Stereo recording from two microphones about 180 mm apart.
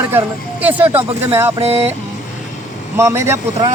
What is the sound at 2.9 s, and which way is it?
Speech, 15° right (ahead or behind).